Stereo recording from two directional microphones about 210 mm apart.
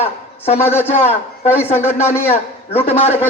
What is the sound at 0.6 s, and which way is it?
Speech, 10° left (ahead or behind).